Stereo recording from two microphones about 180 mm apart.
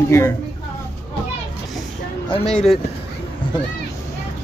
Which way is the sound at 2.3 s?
40° left (ahead or behind).